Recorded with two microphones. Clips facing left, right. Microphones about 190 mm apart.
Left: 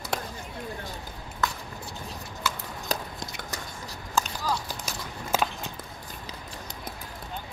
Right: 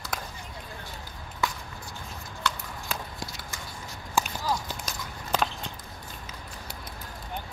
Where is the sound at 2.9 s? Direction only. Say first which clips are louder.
Left 4 dB; 40° left (ahead or behind).